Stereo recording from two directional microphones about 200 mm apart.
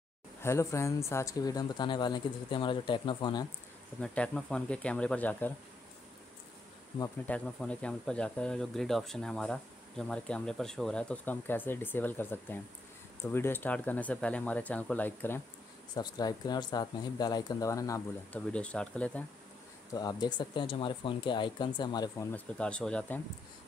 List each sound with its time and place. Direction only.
0.4 s speech: 15° left (ahead or behind)
4.0 s speech: 5° left (ahead or behind)
7.2 s speech: 5° left (ahead or behind)
15.9 s speech: 20° left (ahead or behind)
19.9 s speech: 20° left (ahead or behind)
22.3 s speech: 5° left (ahead or behind)